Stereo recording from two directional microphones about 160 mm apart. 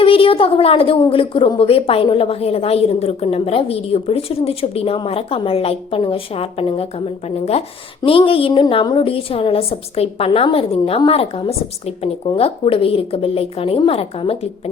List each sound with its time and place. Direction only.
0.0 s a woman's voice: 35° left (ahead or behind)